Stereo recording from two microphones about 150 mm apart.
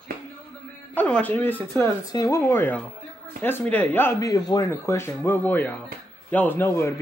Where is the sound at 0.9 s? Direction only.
10° left (ahead or behind).